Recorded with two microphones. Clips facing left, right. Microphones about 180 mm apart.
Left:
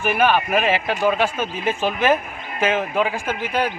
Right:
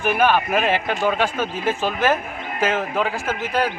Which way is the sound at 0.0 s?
10° left (ahead or behind).